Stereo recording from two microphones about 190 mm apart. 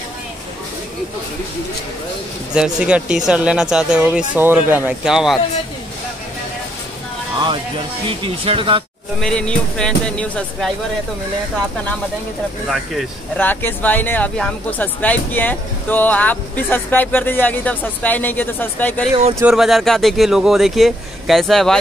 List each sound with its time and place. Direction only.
2.5 s speech: 5° right (ahead or behind)
8.2 s speech: 25° right (ahead or behind)
9.2 s speech: 5° left (ahead or behind)
12.6 s speech: 5° left (ahead or behind)
19.4 s speech: centre (ahead or behind)